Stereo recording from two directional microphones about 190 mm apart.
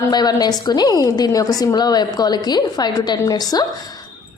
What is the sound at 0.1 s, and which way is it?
A woman's voice, 20° left (ahead or behind).